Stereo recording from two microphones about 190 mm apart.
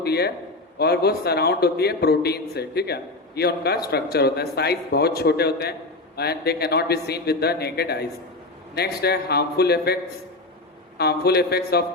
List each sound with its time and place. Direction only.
0.0 s a man's voice: 55° left (ahead or behind)